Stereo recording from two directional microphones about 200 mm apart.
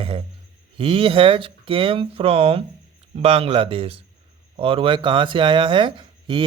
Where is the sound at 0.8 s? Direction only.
25° right (ahead or behind).